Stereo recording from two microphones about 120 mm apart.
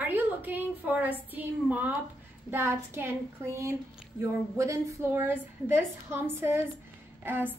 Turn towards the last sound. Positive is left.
turn(degrees=-15)  # may be behind; listen again after turning